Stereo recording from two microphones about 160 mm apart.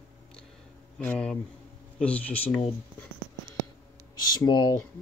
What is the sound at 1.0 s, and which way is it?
Speech, 5° left (ahead or behind).